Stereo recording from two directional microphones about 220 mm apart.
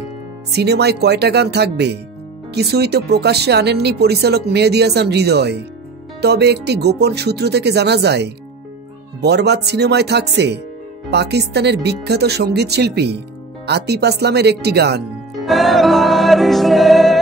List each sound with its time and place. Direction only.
0.5 s speech: 50° right (ahead or behind)
15.4 s music: centre (ahead or behind)